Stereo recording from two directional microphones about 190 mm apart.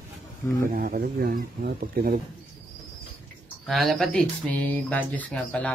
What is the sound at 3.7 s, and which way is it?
Speech, centre (ahead or behind).